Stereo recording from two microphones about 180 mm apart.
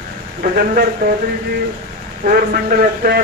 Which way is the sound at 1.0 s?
55° right (ahead or behind).